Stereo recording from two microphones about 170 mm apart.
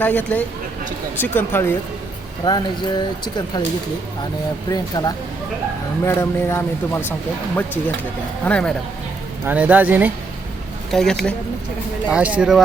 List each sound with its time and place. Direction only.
0.0 s speech: 10° left (ahead or behind)
2.4 s music: 25° left (ahead or behind)
4.7 s music: 25° left (ahead or behind)
6.1 s speech: 15° left (ahead or behind)
8.4 s speech: 5° left (ahead or behind)
9.4 s speech: 10° right (ahead or behind)
10.9 s speech: centre (ahead or behind)
12.0 s speech: 10° right (ahead or behind)